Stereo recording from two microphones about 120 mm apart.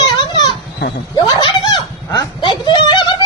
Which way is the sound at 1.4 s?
35° left (ahead or behind).